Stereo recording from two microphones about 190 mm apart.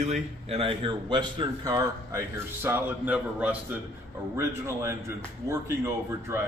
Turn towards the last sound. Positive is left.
turn(degrees=-15)  # may be behind; listen again after turning